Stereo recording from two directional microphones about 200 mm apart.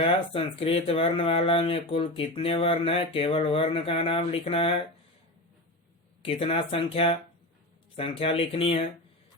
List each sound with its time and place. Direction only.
0.0 s speech: 30° left (ahead or behind)
6.2 s speech: 30° left (ahead or behind)